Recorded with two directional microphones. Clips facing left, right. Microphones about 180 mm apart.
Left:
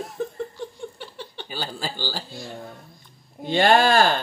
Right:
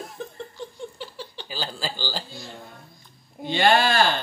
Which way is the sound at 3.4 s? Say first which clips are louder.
Left 2 dB; 45° left (ahead or behind).